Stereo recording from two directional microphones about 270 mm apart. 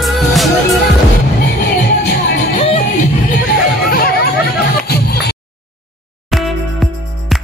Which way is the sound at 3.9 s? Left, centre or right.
Left.